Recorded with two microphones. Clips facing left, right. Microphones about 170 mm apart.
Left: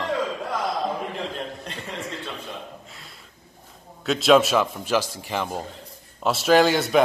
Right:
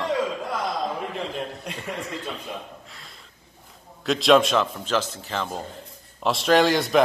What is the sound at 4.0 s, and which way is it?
A man's voice, centre (ahead or behind).